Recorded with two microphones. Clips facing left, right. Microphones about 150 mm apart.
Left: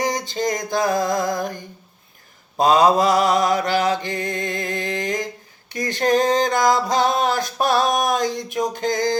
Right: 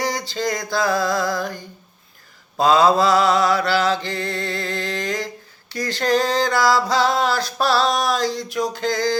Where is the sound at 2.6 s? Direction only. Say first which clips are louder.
Even; 15° left (ahead or behind).